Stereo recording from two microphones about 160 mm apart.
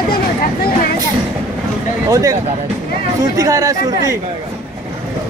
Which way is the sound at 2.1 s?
20° right (ahead or behind).